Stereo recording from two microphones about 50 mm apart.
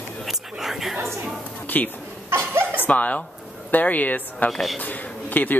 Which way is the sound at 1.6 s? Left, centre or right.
Left.